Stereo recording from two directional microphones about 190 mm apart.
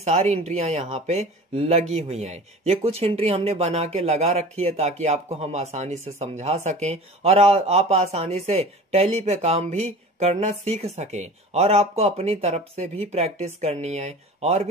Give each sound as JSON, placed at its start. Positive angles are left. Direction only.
{"t": 0.0, "sound": "speech", "side_deg": -35}